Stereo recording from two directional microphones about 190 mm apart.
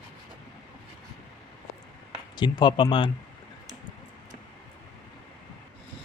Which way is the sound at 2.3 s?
25° left (ahead or behind).